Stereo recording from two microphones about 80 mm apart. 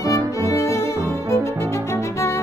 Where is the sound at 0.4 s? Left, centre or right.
Left.